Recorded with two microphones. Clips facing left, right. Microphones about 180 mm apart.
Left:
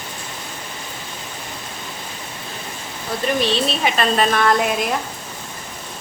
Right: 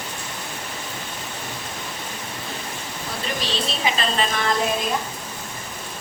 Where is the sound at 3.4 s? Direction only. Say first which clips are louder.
Left 7 dB; 60° left (ahead or behind).